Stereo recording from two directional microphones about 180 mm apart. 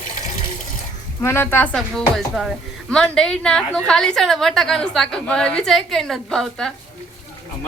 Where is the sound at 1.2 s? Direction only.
15° left (ahead or behind).